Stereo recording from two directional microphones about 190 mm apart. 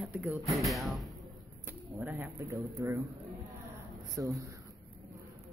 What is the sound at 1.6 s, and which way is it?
Speech, 15° right (ahead or behind).